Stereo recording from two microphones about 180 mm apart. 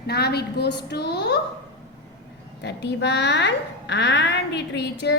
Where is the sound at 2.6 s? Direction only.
70° left (ahead or behind).